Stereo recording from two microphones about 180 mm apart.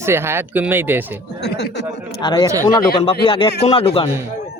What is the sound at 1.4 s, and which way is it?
Speech, 70° left (ahead or behind).